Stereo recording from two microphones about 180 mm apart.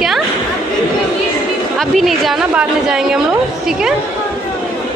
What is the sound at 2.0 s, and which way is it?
A woman's voice, centre (ahead or behind).